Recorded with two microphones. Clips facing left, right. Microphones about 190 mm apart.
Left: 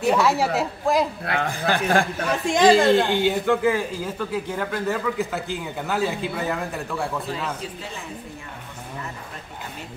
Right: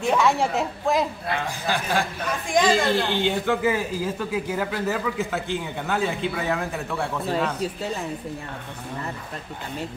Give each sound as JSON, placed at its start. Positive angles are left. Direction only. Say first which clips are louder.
{"t": 0.0, "sound": "a man's voice", "louder": "left 1 dB", "side_deg": 5}
{"t": 1.2, "sound": "a man's voice", "louder": "left 3 dB", "side_deg": 55}
{"t": 2.7, "sound": "a woman's voice", "louder": "left 5 dB", "side_deg": 25}
{"t": 3.2, "sound": "a man's voice", "louder": "left 2 dB", "side_deg": 5}
{"t": 3.6, "sound": "a man's voice", "louder": "left 1 dB", "side_deg": -5}